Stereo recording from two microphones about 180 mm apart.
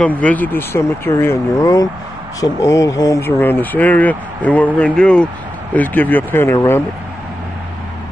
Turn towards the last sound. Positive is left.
turn(degrees=15)  # may be behind; listen again after turning